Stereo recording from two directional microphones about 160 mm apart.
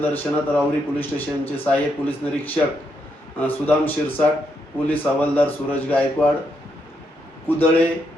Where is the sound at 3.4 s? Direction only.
10° left (ahead or behind).